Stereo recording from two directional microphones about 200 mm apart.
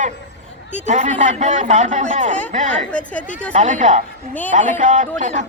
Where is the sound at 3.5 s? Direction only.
40° right (ahead or behind).